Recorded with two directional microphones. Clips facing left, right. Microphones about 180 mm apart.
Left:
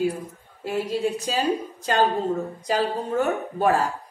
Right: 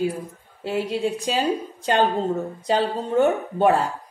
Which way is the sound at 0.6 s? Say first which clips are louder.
Right 1 dB; 25° right (ahead or behind).